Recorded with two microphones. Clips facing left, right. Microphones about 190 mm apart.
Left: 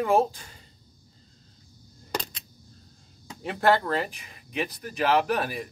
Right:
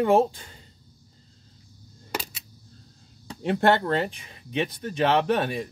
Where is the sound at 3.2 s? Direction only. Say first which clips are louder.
Right 2 dB; 30° right (ahead or behind).